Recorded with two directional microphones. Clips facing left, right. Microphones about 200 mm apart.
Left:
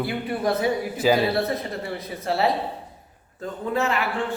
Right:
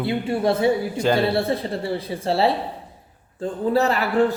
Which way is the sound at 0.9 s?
5° left (ahead or behind).